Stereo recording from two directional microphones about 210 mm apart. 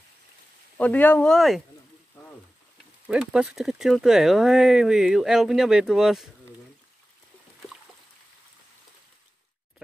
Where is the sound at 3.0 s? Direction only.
5° right (ahead or behind).